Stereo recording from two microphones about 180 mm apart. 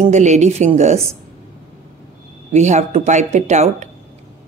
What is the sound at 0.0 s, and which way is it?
Speech, 40° right (ahead or behind).